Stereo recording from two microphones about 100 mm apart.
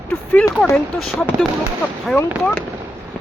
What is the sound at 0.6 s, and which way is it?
Speech, centre (ahead or behind).